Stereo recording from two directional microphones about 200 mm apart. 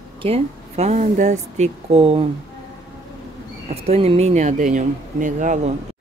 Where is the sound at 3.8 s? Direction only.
30° right (ahead or behind).